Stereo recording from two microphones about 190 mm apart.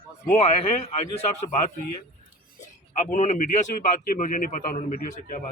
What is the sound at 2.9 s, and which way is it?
A man's voice, 40° left (ahead or behind).